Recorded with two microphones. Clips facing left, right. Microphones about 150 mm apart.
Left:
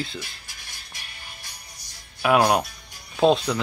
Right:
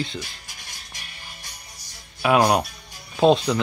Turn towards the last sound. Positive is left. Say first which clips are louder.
# right 2 dB
turn(degrees=0)  # may be behind; listen again after turning